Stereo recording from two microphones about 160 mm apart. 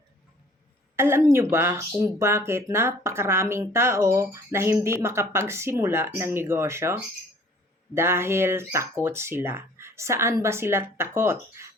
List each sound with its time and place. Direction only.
0.9 s speech: 15° right (ahead or behind)